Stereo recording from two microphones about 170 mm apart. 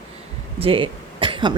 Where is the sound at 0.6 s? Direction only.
30° right (ahead or behind).